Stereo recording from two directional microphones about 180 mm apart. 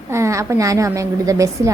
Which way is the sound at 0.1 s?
15° right (ahead or behind).